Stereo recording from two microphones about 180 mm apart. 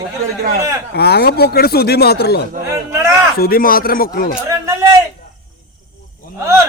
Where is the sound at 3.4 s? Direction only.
55° left (ahead or behind).